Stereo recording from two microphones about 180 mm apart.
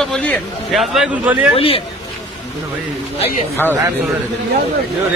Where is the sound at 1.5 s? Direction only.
30° left (ahead or behind).